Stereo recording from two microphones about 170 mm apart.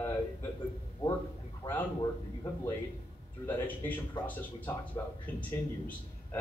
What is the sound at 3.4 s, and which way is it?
Speech, 10° left (ahead or behind).